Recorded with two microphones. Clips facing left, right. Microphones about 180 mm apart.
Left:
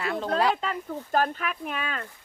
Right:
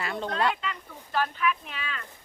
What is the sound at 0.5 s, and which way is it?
Speech, 45° left (ahead or behind).